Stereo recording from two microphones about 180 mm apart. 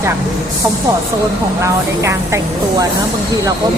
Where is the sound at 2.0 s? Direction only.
15° right (ahead or behind).